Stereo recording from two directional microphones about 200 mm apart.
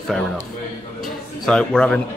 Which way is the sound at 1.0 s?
Centre (ahead or behind).